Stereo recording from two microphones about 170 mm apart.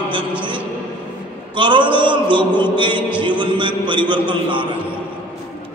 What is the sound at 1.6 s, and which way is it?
A man's voice, 30° right (ahead or behind).